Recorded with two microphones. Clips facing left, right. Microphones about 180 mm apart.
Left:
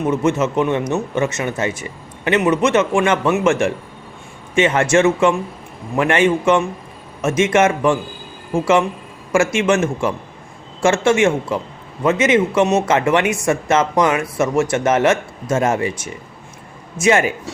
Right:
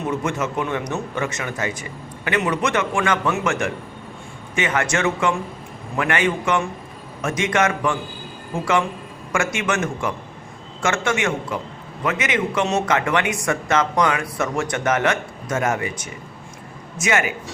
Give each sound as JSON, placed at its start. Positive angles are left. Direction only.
{"t": 0.0, "sound": "a man's voice", "side_deg": 20}